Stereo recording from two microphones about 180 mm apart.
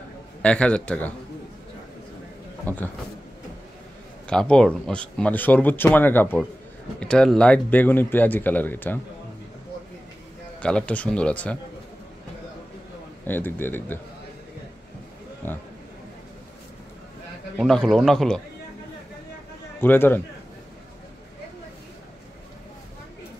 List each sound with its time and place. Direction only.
0.4 s a man's voice: 5° left (ahead or behind)
2.6 s a man's voice: 10° left (ahead or behind)
4.3 s speech: 5° left (ahead or behind)
10.6 s speech: 5° left (ahead or behind)
13.2 s speech: 10° left (ahead or behind)
15.4 s speech: 10° left (ahead or behind)
17.6 s a man's voice: 5° left (ahead or behind)
19.8 s speech: 10° left (ahead or behind)